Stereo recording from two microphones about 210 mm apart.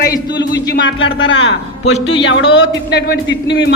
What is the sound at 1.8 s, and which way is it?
Speech, 30° left (ahead or behind).